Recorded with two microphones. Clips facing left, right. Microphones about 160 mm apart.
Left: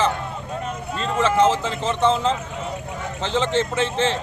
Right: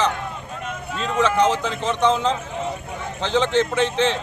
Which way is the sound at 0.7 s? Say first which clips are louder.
Right 2 dB; 35° left (ahead or behind).